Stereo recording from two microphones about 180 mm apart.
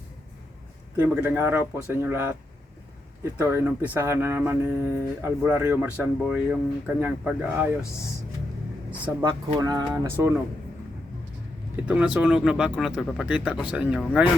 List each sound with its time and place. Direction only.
0.9 s speech: 10° right (ahead or behind)
3.3 s speech: 15° right (ahead or behind)
9.6 s speech: 25° right (ahead or behind)
11.9 s speech: 5° right (ahead or behind)